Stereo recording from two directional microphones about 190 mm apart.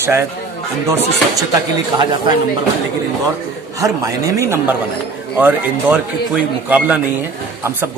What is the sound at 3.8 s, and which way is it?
A man's voice, 15° right (ahead or behind).